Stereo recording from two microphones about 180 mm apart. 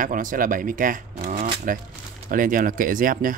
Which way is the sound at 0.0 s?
50° right (ahead or behind).